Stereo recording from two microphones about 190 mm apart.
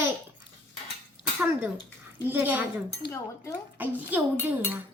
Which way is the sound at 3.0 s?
60° left (ahead or behind).